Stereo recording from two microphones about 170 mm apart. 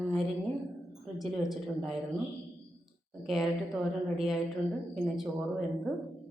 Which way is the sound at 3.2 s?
Centre (ahead or behind).